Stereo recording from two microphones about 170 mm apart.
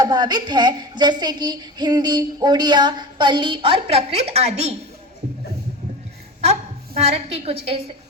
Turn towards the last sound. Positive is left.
turn(degrees=-35)  # may be behind; listen again after turning